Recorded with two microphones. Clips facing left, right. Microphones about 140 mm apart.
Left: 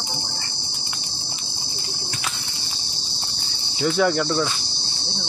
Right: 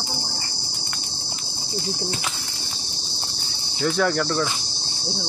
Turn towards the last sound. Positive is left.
turn(degrees=5)  # may be behind; listen again after turning